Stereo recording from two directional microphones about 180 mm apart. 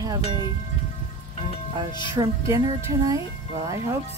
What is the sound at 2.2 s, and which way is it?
Speech, 20° right (ahead or behind).